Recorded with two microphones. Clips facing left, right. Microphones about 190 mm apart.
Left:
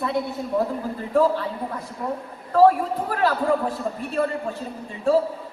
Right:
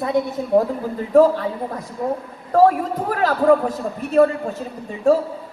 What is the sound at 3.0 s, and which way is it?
A woman's voice, 45° right (ahead or behind).